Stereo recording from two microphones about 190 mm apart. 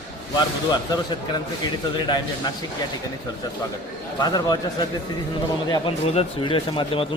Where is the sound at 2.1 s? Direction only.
20° left (ahead or behind).